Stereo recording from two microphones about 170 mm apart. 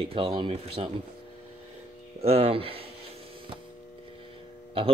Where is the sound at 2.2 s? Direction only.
35° right (ahead or behind).